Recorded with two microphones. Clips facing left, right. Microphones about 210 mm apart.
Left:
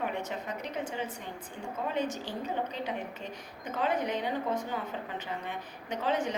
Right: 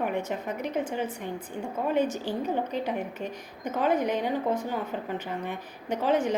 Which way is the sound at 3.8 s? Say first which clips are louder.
Right 5 dB; 50° right (ahead or behind).